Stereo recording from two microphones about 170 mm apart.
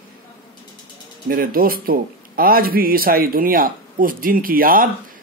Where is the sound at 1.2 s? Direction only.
60° right (ahead or behind).